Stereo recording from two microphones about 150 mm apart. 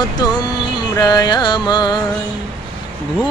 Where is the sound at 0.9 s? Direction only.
25° left (ahead or behind).